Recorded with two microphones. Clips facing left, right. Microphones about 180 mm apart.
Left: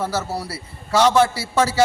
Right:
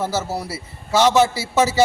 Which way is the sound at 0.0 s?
20° right (ahead or behind).